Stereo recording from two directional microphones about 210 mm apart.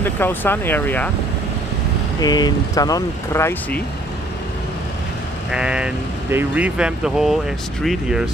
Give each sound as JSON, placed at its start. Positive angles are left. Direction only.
{"t": 0.0, "sound": "speech", "side_deg": 10}
{"t": 2.1, "sound": "speech", "side_deg": 20}
{"t": 5.5, "sound": "speech", "side_deg": -5}